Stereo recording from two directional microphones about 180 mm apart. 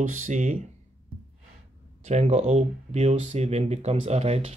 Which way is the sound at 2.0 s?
40° right (ahead or behind).